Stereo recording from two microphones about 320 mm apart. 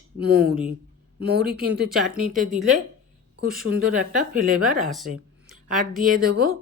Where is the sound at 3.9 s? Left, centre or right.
Right.